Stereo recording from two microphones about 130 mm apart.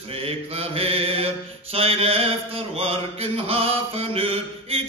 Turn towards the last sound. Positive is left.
turn(degrees=-50)  # may be behind; listen again after turning